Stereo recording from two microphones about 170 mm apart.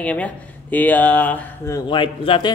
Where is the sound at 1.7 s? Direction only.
30° left (ahead or behind).